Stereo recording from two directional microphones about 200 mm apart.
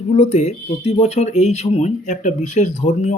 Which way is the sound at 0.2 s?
30° left (ahead or behind).